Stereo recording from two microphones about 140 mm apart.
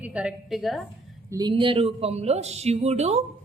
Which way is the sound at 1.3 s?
30° right (ahead or behind).